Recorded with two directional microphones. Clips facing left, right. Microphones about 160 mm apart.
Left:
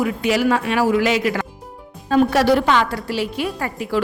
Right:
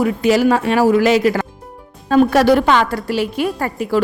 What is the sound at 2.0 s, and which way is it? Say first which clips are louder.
A woman's voice: right 3 dB; 50° right (ahead or behind).